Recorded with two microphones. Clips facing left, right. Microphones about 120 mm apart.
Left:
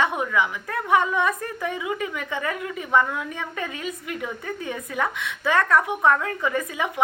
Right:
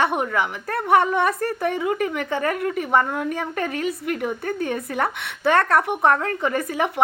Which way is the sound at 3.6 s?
70° right (ahead or behind).